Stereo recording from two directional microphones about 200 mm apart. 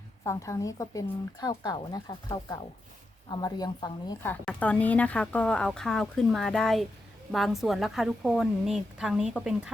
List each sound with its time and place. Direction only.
0.3 s a woman's voice: 15° left (ahead or behind); by 9.7 s 5° right (ahead or behind)